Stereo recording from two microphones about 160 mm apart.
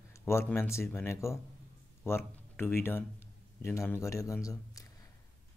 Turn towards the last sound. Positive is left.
turn(degrees=20)  # may be behind; listen again after turning